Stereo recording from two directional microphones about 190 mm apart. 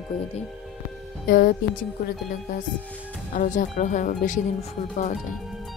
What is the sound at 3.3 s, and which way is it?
Speech, 45° left (ahead or behind).